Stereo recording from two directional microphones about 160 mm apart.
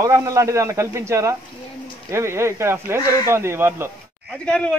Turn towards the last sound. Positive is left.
turn(degrees=5)  # may be behind; listen again after turning